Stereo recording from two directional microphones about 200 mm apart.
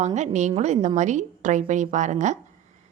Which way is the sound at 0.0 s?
35° right (ahead or behind).